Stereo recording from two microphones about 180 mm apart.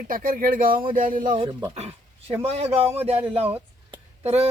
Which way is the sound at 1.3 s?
30° right (ahead or behind).